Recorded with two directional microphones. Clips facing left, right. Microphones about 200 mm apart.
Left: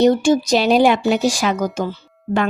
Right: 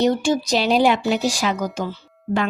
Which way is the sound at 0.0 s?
50° left (ahead or behind).